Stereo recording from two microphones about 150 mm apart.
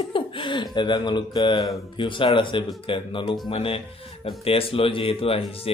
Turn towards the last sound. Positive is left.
turn(degrees=40)  # may be behind; listen again after turning